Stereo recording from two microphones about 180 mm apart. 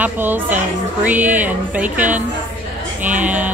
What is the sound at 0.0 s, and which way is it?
Music, 10° right (ahead or behind).